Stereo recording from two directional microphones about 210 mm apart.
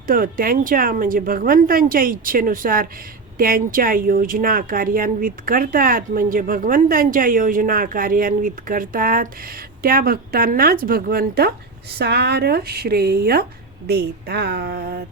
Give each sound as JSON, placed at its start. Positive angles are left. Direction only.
{"t": 0.1, "sound": "a woman's voice", "side_deg": -40}